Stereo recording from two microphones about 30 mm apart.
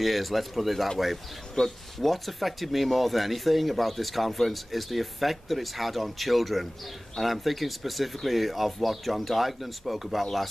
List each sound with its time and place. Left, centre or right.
0.0 s speech: centre
1.6 s speech: centre
2.0 s speech: centre